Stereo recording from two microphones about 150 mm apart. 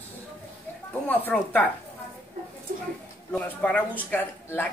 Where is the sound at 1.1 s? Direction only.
10° left (ahead or behind).